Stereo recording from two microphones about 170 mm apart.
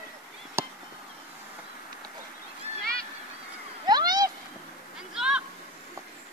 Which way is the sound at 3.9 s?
25° right (ahead or behind).